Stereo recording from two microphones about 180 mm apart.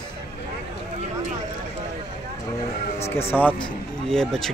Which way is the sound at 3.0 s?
35° left (ahead or behind).